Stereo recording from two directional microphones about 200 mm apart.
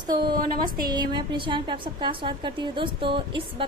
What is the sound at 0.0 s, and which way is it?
A woman's voice, 20° right (ahead or behind).